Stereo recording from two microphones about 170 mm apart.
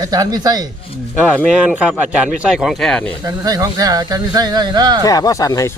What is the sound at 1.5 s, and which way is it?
Speech, 5° right (ahead or behind).